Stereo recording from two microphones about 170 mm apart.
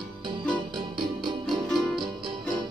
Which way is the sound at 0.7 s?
25° right (ahead or behind).